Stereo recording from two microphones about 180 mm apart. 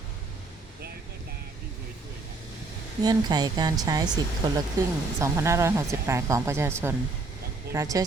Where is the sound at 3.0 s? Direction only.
20° right (ahead or behind).